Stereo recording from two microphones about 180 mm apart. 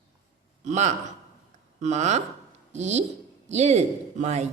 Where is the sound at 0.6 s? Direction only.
40° right (ahead or behind).